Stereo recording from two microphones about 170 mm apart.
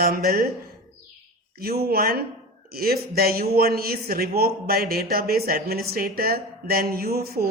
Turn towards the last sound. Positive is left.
turn(degrees=-65)  # may be behind; listen again after turning